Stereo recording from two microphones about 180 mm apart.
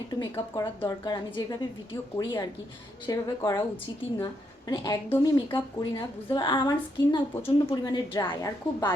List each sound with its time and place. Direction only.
0.2 s a woman's voice: 20° left (ahead or behind)
4.7 s a woman's voice: 20° left (ahead or behind)